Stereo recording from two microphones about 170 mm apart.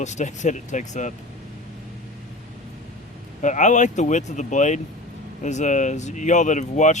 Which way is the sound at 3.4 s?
45° left (ahead or behind).